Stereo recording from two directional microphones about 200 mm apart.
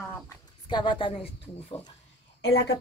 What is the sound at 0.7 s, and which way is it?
Speech, 25° left (ahead or behind).